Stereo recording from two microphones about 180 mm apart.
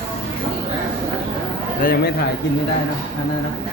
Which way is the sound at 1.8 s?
55° left (ahead or behind).